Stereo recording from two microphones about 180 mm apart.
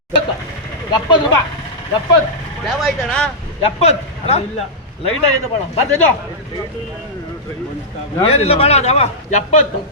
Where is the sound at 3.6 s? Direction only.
35° left (ahead or behind).